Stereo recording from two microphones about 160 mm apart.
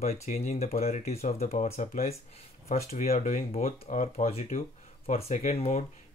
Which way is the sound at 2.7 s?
55° left (ahead or behind).